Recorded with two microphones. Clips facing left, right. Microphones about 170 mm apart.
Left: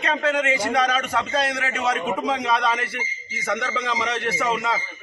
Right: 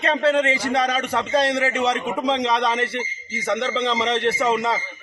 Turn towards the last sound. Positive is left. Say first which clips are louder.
# right 4 dB
turn(degrees=-25)  # may be behind; listen again after turning